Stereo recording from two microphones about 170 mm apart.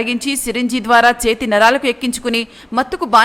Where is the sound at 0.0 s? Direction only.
Centre (ahead or behind).